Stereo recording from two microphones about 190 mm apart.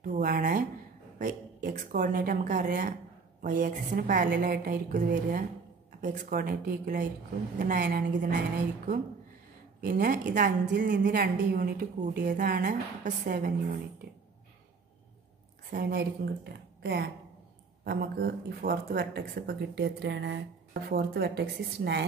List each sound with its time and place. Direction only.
0.0 s a woman's voice: 50° right (ahead or behind)
9.8 s a woman's voice: 55° right (ahead or behind)
15.7 s speech: 60° right (ahead or behind)